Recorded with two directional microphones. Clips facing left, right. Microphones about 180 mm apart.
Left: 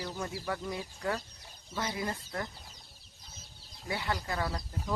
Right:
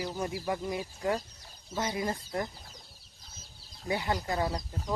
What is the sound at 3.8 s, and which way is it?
Speech, 20° right (ahead or behind).